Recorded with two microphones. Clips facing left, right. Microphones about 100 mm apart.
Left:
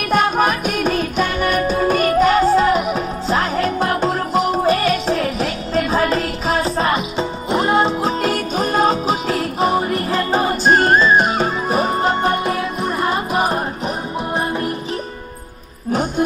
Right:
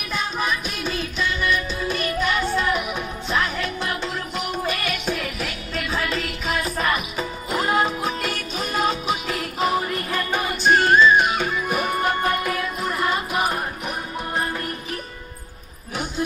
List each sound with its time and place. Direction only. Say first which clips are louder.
0.1 s music: left 9 dB; 55° left (ahead or behind); by 14.7 s 25° left (ahead or behind)